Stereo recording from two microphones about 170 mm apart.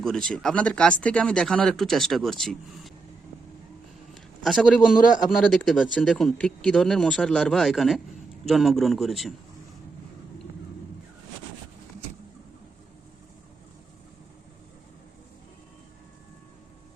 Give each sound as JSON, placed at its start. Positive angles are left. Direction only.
{"t": 0.0, "sound": "speech", "side_deg": 5}
{"t": 4.1, "sound": "a sound", "side_deg": 0}
{"t": 4.9, "sound": "speech", "side_deg": 50}
{"t": 5.5, "sound": "speech", "side_deg": 0}